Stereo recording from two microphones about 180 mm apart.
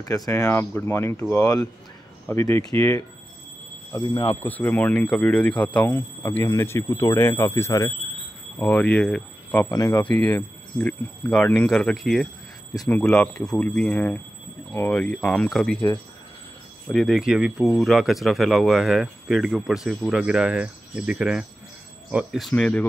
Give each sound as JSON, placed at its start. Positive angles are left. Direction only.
{"t": 0.0, "sound": "speech", "side_deg": 20}
{"t": 4.4, "sound": "speech", "side_deg": 10}
{"t": 16.9, "sound": "speech", "side_deg": 0}